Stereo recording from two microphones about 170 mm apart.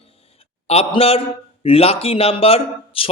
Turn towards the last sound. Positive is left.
turn(degrees=35)  # may be behind; listen again after turning